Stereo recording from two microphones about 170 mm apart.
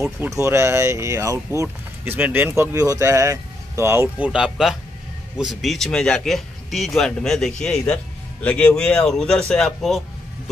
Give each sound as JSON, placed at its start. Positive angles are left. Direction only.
{"t": 0.3, "sound": "speech", "side_deg": -15}